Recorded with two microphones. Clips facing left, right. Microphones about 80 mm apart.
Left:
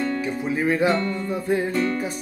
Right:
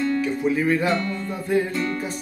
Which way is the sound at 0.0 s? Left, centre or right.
Left.